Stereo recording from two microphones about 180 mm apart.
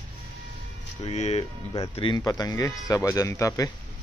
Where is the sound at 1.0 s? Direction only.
35° left (ahead or behind); by 3.7 s 15° left (ahead or behind).